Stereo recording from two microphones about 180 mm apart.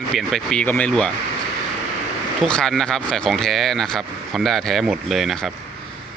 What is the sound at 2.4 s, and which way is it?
Speech, 5° left (ahead or behind).